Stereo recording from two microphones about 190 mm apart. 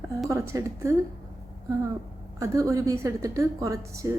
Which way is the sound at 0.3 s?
15° right (ahead or behind).